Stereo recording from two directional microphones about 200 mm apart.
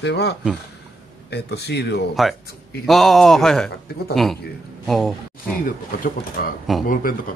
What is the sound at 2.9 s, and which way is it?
A man's voice, centre (ahead or behind).